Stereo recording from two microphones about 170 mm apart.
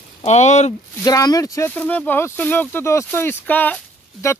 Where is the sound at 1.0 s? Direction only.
20° left (ahead or behind).